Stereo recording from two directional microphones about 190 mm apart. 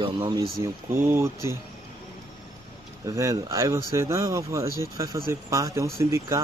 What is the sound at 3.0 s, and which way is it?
Speech, 15° right (ahead or behind).